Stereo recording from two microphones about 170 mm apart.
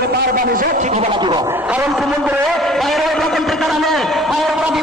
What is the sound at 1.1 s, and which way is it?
Speech, 25° right (ahead or behind).